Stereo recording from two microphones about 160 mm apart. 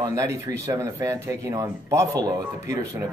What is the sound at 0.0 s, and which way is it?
Speech, 20° right (ahead or behind).